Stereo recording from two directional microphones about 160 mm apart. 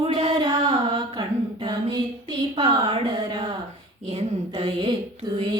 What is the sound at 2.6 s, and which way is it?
A woman's voice, 30° right (ahead or behind).